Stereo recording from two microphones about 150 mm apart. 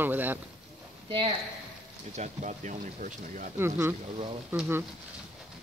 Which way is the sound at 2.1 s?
50° right (ahead or behind).